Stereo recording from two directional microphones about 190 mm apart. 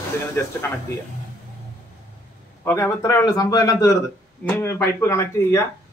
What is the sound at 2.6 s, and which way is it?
A man's voice, 15° left (ahead or behind).